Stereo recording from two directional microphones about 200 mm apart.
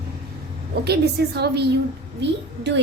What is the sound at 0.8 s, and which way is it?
A woman's voice, 55° right (ahead or behind).